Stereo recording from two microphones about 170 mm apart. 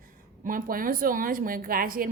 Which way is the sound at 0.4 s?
55° right (ahead or behind).